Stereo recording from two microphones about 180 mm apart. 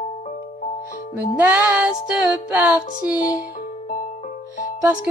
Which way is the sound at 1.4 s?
10° right (ahead or behind).